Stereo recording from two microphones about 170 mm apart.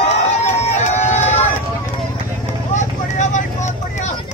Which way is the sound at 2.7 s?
45° left (ahead or behind).